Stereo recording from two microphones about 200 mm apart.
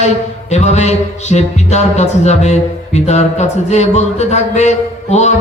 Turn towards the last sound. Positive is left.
turn(degrees=35)  # may be behind; listen again after turning